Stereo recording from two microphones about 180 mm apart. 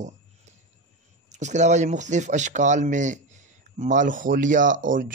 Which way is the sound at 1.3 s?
40° right (ahead or behind).